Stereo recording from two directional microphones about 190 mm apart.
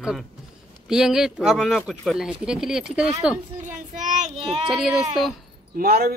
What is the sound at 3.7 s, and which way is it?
Child singing, 40° right (ahead or behind).